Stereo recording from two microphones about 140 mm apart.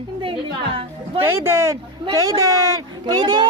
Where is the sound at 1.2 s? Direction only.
15° right (ahead or behind).